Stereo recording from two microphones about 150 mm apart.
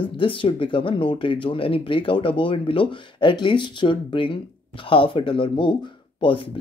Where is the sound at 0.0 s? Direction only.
35° left (ahead or behind).